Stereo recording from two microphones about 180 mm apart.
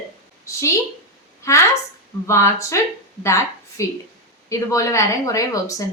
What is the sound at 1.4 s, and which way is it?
Speech, 15° left (ahead or behind).